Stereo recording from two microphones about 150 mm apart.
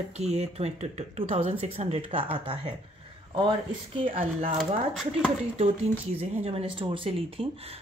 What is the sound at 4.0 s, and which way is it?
Speech, 35° right (ahead or behind).